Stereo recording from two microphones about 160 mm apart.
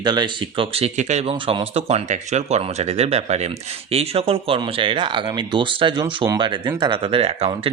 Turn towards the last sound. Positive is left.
turn(degrees=-40)  # may be behind; listen again after turning